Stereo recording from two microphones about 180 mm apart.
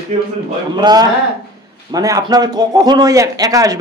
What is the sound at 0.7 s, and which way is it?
A man's voice, 25° right (ahead or behind).